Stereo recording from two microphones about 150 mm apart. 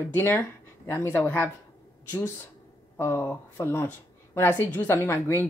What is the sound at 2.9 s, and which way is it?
Speech, 15° left (ahead or behind).